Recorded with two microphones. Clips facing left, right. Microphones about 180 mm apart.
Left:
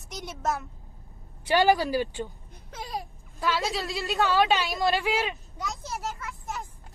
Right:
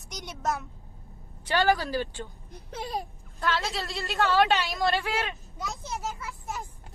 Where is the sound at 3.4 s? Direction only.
5° left (ahead or behind).